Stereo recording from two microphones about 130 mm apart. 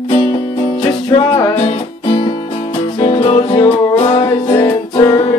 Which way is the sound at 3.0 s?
45° left (ahead or behind).